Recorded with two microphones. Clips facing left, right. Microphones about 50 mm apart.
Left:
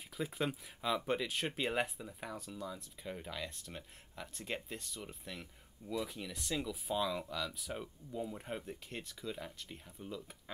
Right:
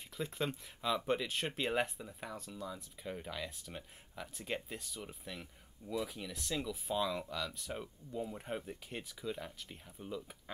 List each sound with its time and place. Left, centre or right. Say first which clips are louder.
0.2 s speech: left 1 dB; centre